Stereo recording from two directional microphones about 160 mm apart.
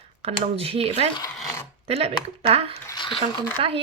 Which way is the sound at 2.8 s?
30° left (ahead or behind).